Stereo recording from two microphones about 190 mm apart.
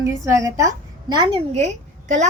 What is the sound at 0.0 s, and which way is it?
A woman's voice, 15° right (ahead or behind).